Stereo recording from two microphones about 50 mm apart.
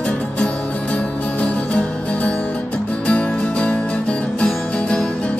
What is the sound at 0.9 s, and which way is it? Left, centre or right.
Music, left.